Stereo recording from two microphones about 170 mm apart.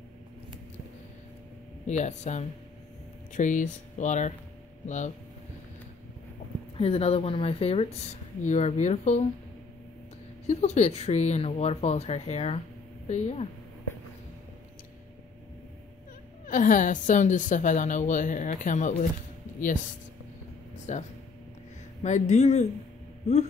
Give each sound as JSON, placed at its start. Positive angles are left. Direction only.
{"t": 1.9, "sound": "a woman's voice", "side_deg": 40}
{"t": 6.8, "sound": "a woman's voice", "side_deg": 35}
{"t": 10.4, "sound": "speech", "side_deg": 40}
{"t": 16.4, "sound": "a woman's voice", "side_deg": 50}
{"t": 20.9, "sound": "a woman's voice", "side_deg": 45}